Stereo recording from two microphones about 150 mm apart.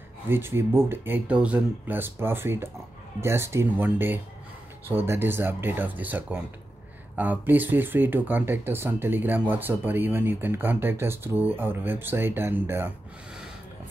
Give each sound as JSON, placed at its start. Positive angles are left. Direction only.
{"t": 0.3, "sound": "speech", "side_deg": -15}